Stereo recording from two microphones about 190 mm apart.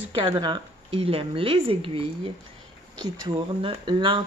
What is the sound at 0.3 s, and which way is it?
A woman's voice, 25° right (ahead or behind).